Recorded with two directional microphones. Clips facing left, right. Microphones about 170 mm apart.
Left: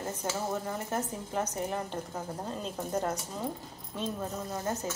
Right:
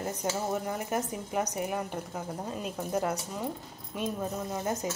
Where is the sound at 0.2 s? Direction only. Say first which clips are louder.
Right 2 dB; 15° right (ahead or behind).